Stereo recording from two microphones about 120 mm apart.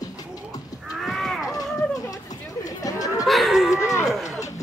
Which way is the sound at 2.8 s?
30° left (ahead or behind).